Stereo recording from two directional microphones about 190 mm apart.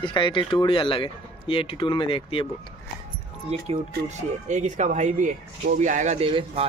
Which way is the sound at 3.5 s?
35° right (ahead or behind).